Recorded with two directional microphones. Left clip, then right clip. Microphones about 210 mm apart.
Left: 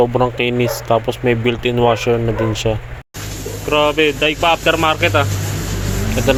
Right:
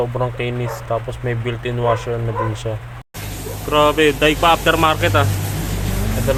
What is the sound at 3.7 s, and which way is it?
Speech, centre (ahead or behind).